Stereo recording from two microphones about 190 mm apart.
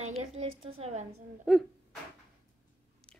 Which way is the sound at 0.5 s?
90° right.